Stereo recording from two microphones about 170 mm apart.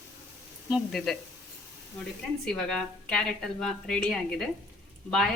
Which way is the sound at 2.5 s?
5° left (ahead or behind).